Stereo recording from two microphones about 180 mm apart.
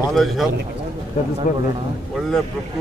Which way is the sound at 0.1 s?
Centre (ahead or behind).